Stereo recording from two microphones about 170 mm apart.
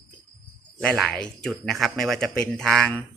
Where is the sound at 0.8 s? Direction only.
5° left (ahead or behind).